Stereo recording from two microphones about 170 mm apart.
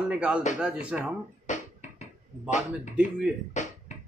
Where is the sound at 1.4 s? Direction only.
45° left (ahead or behind).